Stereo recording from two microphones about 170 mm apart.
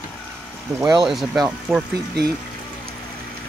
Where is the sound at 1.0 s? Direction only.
Centre (ahead or behind).